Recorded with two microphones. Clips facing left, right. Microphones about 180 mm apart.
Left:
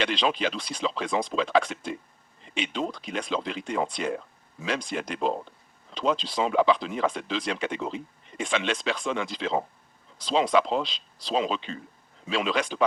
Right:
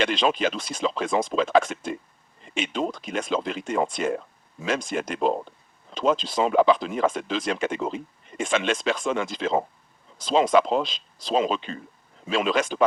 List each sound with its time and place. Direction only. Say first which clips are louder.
0.0 s speech: right 3 dB; 45° right (ahead or behind)